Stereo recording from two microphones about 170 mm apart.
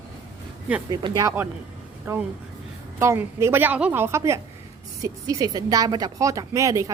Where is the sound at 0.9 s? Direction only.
20° right (ahead or behind).